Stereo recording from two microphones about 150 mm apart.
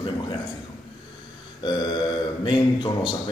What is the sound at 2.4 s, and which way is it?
Speech, 35° left (ahead or behind).